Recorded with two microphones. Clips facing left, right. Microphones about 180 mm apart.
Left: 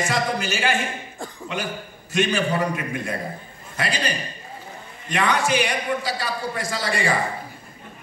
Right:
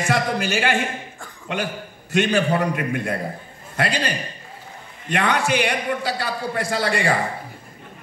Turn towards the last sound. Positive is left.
turn(degrees=-60)  # may be behind; listen again after turning